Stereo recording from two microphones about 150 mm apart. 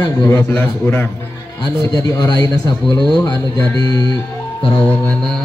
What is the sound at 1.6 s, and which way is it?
A man's voice, 25° left (ahead or behind).